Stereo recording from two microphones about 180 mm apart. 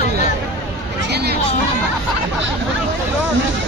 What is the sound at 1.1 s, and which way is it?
Speech, 65° right (ahead or behind).